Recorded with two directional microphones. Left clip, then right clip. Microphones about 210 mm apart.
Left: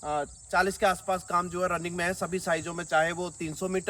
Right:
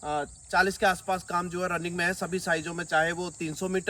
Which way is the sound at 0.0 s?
10° left (ahead or behind).